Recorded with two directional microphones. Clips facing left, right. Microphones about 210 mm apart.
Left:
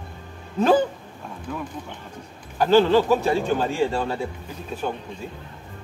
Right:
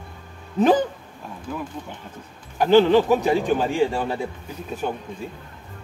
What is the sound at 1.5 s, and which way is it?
Speech, 5° right (ahead or behind).